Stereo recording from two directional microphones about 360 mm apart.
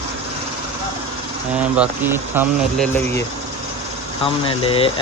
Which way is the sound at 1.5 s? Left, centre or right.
Centre.